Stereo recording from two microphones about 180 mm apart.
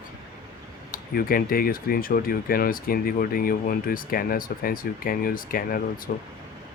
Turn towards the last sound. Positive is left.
turn(degrees=50)  # may be behind; listen again after turning